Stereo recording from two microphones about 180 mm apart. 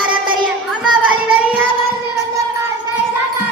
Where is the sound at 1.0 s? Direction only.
10° right (ahead or behind).